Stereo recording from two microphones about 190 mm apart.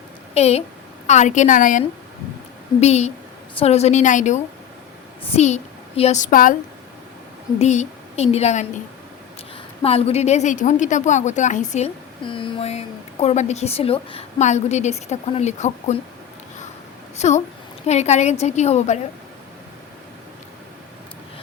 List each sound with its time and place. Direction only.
0.3 s a woman's voice: 35° left (ahead or behind)
2.8 s a woman's voice: 35° left (ahead or behind)
7.6 s a woman's voice: 35° left (ahead or behind)
9.8 s a woman's voice: 30° left (ahead or behind)
12.2 s a woman's voice: 25° left (ahead or behind)
17.2 s a woman's voice: 40° left (ahead or behind)